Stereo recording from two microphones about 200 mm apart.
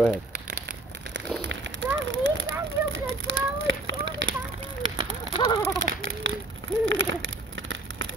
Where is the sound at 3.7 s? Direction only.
70° right (ahead or behind).